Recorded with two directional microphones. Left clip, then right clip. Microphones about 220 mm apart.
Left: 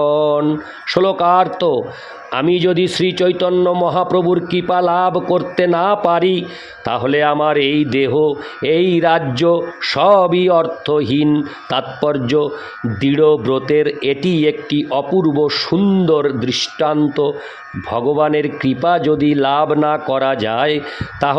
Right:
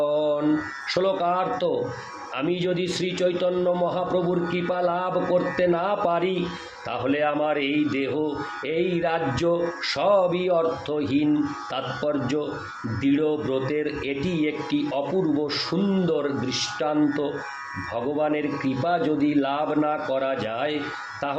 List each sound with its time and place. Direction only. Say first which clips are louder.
0.0 s mantra: left 9 dB; 45° left (ahead or behind)
0.9 s a man's voice: left 10 dB; 45° left (ahead or behind)